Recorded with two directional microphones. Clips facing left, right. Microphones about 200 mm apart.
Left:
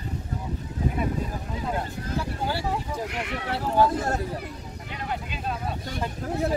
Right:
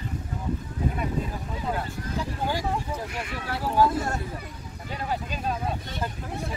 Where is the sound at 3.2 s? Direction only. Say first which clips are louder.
Left 3 dB; 65° left (ahead or behind).